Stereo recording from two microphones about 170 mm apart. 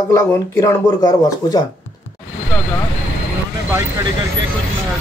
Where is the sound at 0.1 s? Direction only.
20° left (ahead or behind).